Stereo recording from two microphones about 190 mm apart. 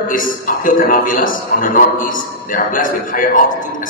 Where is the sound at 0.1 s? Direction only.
45° left (ahead or behind).